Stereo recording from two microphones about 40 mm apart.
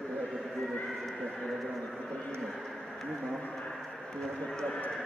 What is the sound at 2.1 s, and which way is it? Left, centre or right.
Speech, left.